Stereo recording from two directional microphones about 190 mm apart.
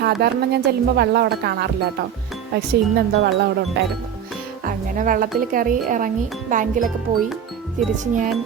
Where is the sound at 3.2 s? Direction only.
65° right (ahead or behind).